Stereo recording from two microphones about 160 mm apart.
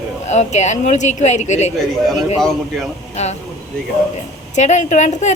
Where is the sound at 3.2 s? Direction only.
45° left (ahead or behind).